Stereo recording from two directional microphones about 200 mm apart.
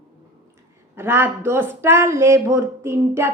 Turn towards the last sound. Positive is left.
turn(degrees=-10)  # may be behind; listen again after turning